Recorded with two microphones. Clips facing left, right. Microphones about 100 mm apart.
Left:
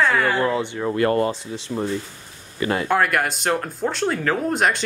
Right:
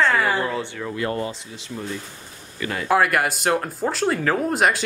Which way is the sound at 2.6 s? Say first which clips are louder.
Left 5 dB; 30° left (ahead or behind).